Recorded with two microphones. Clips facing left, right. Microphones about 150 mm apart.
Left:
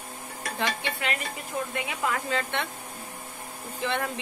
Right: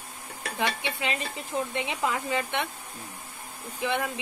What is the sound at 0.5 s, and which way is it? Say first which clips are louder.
Speech: right 1 dB; 15° right (ahead or behind).